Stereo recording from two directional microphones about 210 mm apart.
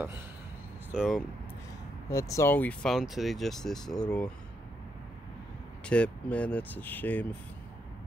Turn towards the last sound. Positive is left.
turn(degrees=10)  # may be behind; listen again after turning